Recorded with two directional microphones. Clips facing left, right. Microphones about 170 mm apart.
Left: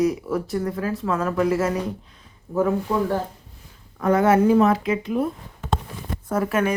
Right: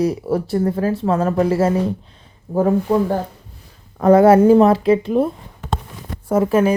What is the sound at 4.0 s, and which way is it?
Speech, 35° right (ahead or behind).